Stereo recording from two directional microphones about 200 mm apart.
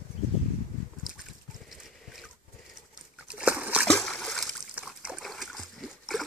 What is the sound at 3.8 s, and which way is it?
Splash, 5° left (ahead or behind).